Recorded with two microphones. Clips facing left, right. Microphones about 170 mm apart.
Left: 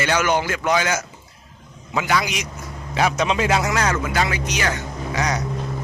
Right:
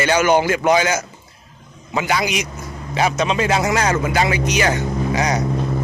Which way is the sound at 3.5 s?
10° right (ahead or behind).